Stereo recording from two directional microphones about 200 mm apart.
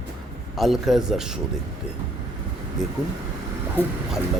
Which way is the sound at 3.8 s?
10° left (ahead or behind).